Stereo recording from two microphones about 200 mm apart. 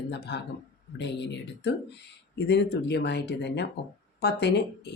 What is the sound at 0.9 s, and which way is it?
Speech, 60° left (ahead or behind).